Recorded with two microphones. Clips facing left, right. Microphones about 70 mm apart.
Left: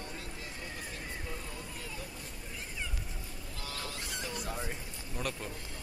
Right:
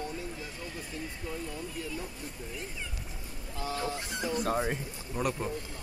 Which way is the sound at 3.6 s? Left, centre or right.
Right.